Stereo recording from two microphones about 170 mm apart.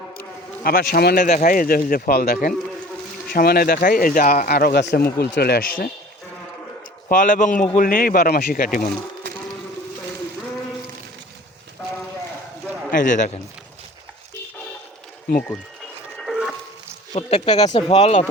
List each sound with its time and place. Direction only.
0.6 s a man's voice: 65° left (ahead or behind)
7.1 s a man's voice: 50° left (ahead or behind)
12.9 s speech: 50° left (ahead or behind)
16.1 s a sound: centre (ahead or behind)
17.2 s speech: 40° left (ahead or behind)